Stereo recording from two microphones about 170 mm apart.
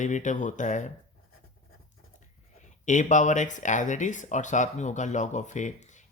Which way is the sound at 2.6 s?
45° left (ahead or behind).